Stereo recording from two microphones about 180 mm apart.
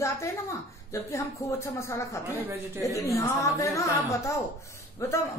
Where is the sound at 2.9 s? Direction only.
15° left (ahead or behind).